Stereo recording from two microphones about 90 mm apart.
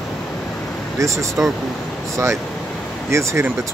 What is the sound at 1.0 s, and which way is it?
Speech, 35° right (ahead or behind).